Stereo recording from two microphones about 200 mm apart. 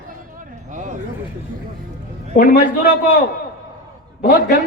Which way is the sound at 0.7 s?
40° right (ahead or behind).